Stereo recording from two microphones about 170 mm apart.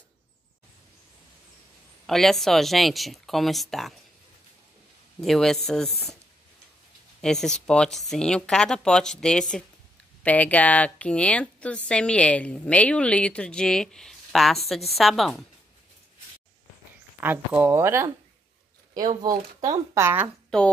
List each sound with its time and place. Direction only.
2.0 s speech: centre (ahead or behind)
5.2 s speech: centre (ahead or behind)
7.2 s a woman's voice: 5° left (ahead or behind)
17.2 s speech: 10° right (ahead or behind)
19.2 s speech: 20° right (ahead or behind)
20.4 s a sound: 5° left (ahead or behind)